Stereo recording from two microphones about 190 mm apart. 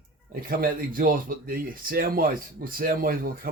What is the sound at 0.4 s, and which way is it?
Speech, 50° right (ahead or behind).